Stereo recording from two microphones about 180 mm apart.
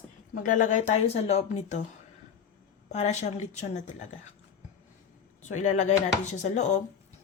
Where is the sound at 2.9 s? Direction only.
40° left (ahead or behind).